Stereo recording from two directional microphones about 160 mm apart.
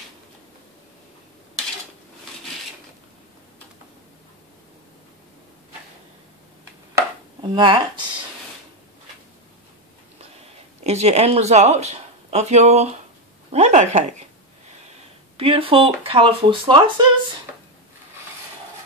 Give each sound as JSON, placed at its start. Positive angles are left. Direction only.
{"t": 7.5, "sound": "speech", "side_deg": -30}
{"t": 10.8, "sound": "speech", "side_deg": -45}
{"t": 15.3, "sound": "speech", "side_deg": -35}